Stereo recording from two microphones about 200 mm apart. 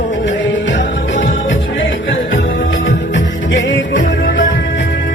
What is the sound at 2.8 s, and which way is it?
Music, 70° left (ahead or behind).